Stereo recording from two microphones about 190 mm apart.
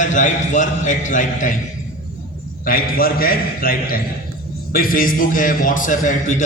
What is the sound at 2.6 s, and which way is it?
A man's voice, 50° left (ahead or behind).